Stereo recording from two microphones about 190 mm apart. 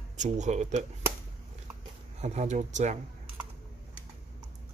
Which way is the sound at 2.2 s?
35° right (ahead or behind).